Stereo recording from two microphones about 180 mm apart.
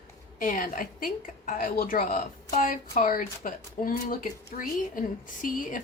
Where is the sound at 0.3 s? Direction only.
50° left (ahead or behind).